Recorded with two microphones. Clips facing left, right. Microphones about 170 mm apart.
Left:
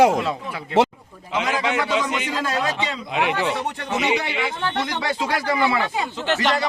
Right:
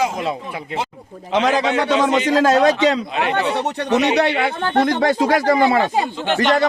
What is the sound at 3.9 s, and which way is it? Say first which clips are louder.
Speech: right 7 dB; 70° right (ahead or behind).